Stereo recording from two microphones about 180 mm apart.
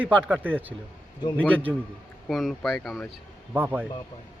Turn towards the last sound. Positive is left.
turn(degrees=-10)  # may be behind; listen again after turning